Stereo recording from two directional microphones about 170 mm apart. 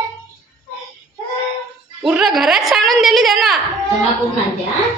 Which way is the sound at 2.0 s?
5° right (ahead or behind).